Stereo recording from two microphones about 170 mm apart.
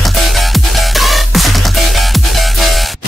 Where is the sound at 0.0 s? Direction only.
Centre (ahead or behind).